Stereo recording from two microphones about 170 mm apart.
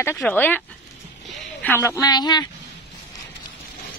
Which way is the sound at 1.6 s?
15° left (ahead or behind).